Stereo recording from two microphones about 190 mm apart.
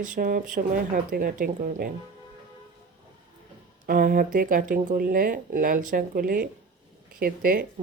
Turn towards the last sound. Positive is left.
turn(degrees=-50)  # may be behind; listen again after turning